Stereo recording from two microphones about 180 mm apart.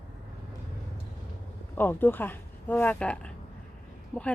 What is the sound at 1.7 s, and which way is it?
A woman's voice, 10° left (ahead or behind).